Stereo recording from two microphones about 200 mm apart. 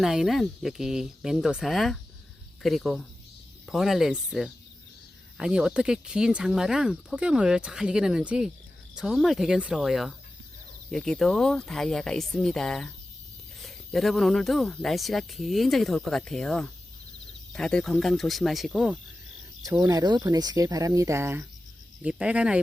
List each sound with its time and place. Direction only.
0.0 s speech: centre (ahead or behind)
19.6 s speech: 15° right (ahead or behind)